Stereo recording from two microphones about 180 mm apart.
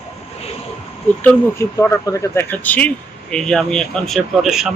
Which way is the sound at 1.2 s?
10° left (ahead or behind).